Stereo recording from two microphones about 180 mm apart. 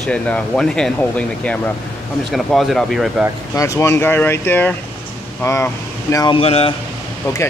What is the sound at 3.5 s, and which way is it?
Speech, 15° left (ahead or behind).